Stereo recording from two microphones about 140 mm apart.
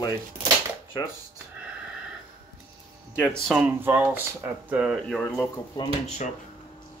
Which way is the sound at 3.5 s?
15° right (ahead or behind).